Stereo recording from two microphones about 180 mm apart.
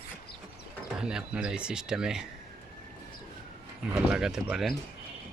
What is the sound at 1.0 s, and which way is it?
Speech, 5° right (ahead or behind).